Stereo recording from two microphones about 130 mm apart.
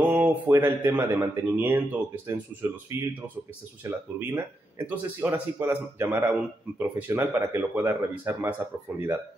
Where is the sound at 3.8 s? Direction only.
15° right (ahead or behind).